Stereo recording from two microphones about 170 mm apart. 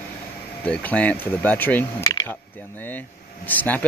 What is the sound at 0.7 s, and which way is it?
Speech, 10° left (ahead or behind).